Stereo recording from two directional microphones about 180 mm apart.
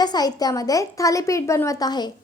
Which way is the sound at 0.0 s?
20° left (ahead or behind).